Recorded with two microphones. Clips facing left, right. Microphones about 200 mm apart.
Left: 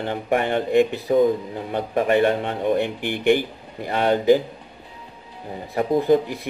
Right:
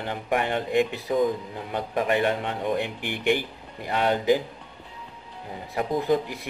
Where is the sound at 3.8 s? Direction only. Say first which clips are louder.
Left 5 dB; 45° left (ahead or behind).